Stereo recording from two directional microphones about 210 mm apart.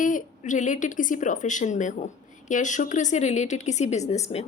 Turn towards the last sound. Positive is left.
turn(degrees=30)  # may be behind; listen again after turning